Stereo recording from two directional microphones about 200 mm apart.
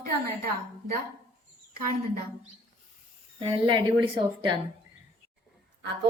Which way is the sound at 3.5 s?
25° right (ahead or behind).